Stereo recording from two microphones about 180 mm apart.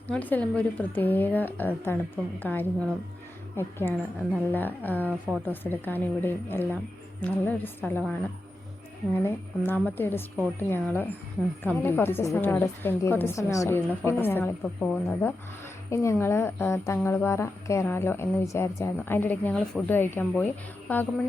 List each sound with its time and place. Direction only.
0.1 s a woman's voice: 10° left (ahead or behind)
5.0 s a woman's voice: 10° right (ahead or behind)
5.5 s a woman's voice: 10° left (ahead or behind)
9.2 s a woman's voice: 10° left (ahead or behind)